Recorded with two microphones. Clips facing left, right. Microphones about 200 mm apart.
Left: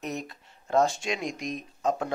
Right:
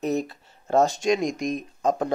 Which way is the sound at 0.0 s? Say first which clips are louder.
Right 9 dB; 35° right (ahead or behind).